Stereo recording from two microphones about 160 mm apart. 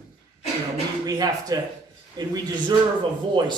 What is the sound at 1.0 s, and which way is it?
Speech, 25° right (ahead or behind).